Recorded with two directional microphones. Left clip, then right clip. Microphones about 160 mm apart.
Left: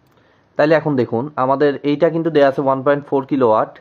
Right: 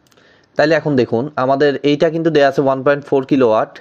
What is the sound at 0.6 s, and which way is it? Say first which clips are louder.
Speech: right 1 dB; 25° right (ahead or behind).